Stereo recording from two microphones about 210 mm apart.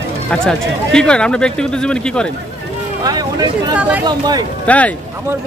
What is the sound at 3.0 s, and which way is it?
Speech, 15° right (ahead or behind).